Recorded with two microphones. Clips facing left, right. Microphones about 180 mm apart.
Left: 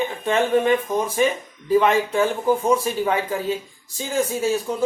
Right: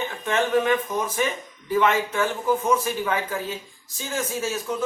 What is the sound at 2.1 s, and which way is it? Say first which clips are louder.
Speech: left 4 dB; 30° left (ahead or behind).